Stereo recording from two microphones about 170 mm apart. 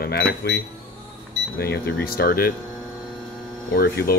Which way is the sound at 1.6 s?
65° left (ahead or behind).